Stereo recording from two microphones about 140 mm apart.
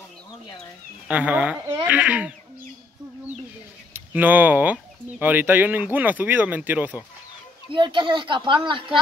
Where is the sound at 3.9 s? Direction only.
10° right (ahead or behind).